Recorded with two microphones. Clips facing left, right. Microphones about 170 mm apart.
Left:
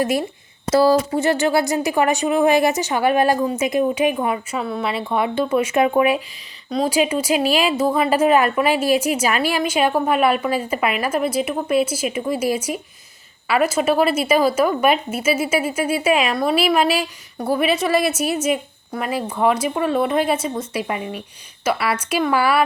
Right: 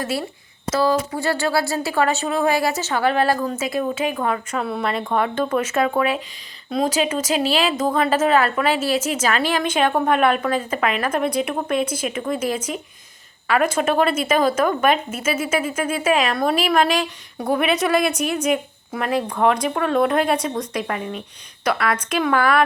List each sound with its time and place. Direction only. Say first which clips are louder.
0.0 s speech: left 5 dB; 15° left (ahead or behind)
0.7 s speech: left 4 dB; 30° left (ahead or behind)
4.5 s speech: even; centre (ahead or behind)
6.7 s speech: even; centre (ahead or behind)
6.9 s speech: left 2 dB; 10° left (ahead or behind)